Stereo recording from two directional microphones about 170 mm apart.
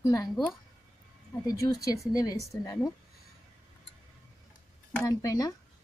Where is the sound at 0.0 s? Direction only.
20° left (ahead or behind).